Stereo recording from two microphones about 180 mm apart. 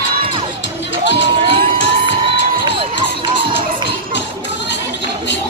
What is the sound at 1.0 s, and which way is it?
Crowd, 80° left.